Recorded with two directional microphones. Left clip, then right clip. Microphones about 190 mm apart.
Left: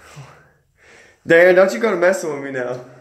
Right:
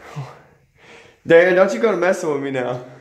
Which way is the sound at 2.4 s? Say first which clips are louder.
Right 1 dB; 35° right (ahead or behind).